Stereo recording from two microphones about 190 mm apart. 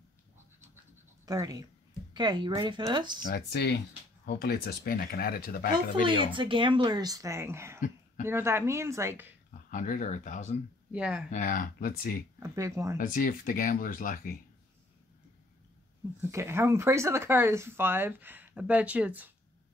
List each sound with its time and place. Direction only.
1.2 s speech: 20° right (ahead or behind)
3.3 s speech: 55° left (ahead or behind)
6.0 s speech: 25° right (ahead or behind)
9.7 s speech: 45° left (ahead or behind)
10.9 s speech: 5° right (ahead or behind)
11.2 s speech: 45° left (ahead or behind)
12.4 s speech: 15° right (ahead or behind)
12.9 s speech: 45° left (ahead or behind)
16.2 s speech: 15° right (ahead or behind)